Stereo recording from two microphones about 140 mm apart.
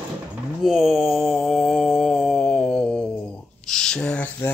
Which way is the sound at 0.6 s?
5° right (ahead or behind).